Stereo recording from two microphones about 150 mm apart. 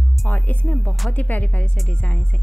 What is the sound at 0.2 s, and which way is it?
A woman's voice, 10° left (ahead or behind).